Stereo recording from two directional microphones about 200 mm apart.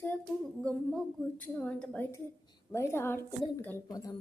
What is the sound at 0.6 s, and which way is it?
A woman's voice, 5° left (ahead or behind).